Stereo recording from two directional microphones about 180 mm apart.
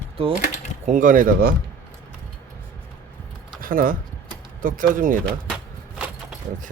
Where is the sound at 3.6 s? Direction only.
50° right (ahead or behind).